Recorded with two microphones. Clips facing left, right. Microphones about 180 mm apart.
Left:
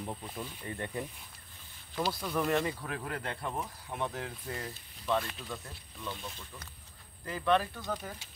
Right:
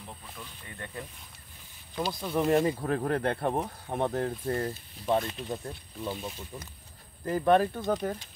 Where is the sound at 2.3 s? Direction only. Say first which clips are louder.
Right 7 dB; 25° right (ahead or behind).